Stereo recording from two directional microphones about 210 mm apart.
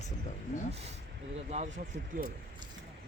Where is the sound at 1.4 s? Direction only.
30° right (ahead or behind).